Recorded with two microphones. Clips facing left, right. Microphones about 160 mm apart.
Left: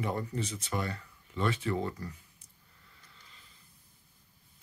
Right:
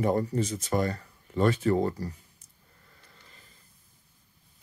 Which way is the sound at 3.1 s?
45° right (ahead or behind).